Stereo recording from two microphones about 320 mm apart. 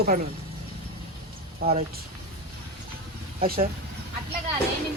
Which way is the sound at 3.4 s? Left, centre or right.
Right.